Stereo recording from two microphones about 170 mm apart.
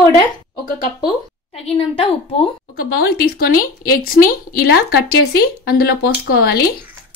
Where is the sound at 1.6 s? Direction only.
35° left (ahead or behind).